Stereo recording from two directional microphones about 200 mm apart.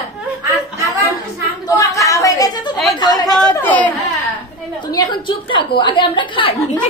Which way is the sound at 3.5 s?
10° left (ahead or behind).